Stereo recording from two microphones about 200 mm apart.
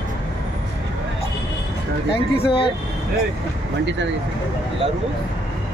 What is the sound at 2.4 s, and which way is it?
Speech, 25° left (ahead or behind).